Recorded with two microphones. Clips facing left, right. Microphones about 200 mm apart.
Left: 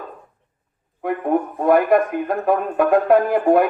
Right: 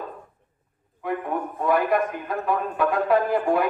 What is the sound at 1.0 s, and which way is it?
Speech, 50° left (ahead or behind).